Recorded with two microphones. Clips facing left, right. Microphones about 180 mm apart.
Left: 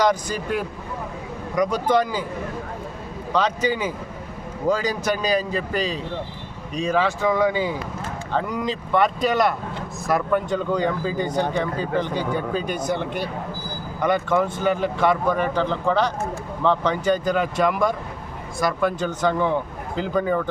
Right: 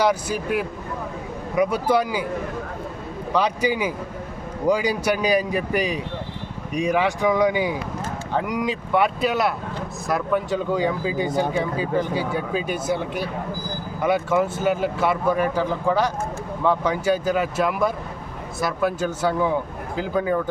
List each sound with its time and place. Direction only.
0.0 s speech: 10° right (ahead or behind)
3.3 s speech: 10° right (ahead or behind)